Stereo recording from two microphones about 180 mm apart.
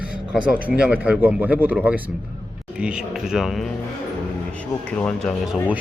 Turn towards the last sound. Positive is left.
turn(degrees=-5)  # may be behind; listen again after turning